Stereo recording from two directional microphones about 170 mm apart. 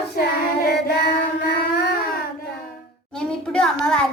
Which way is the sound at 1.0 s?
65° left (ahead or behind).